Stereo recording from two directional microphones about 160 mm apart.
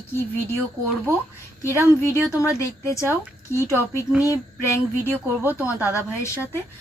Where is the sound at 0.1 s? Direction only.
15° left (ahead or behind).